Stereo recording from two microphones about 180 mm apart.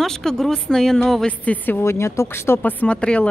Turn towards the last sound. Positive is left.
turn(degrees=5)  # may be behind; listen again after turning